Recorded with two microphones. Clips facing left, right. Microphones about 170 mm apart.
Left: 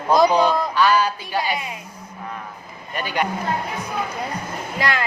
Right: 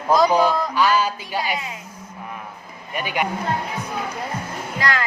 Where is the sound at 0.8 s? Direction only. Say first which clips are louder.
Left 1 dB; 15° right (ahead or behind).